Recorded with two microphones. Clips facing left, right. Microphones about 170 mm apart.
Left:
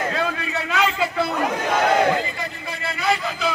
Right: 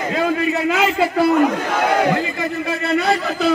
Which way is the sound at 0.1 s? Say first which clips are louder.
Right 7 dB; 25° right (ahead or behind).